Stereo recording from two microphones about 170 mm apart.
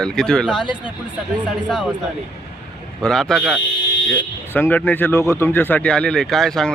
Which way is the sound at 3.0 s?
5° left (ahead or behind).